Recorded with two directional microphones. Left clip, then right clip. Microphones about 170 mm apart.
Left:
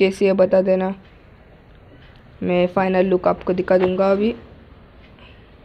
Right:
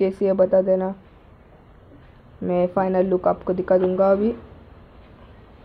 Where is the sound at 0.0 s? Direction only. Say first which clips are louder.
Left 3 dB; 30° left (ahead or behind).